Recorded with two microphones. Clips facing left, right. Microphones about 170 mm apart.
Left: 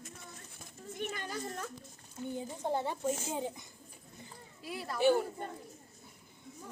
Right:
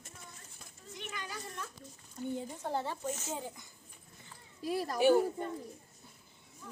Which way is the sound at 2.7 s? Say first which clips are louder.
Left 2 dB; 15° left (ahead or behind).